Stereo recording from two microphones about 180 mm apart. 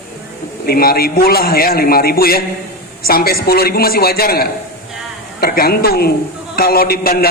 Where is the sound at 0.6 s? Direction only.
55° left (ahead or behind).